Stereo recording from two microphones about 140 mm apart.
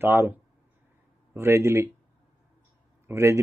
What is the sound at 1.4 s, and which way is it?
Speech, 20° right (ahead or behind).